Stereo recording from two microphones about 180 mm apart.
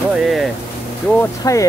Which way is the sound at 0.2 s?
Centre (ahead or behind).